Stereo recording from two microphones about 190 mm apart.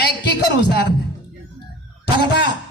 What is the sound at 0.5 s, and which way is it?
Speech, 60° left (ahead or behind).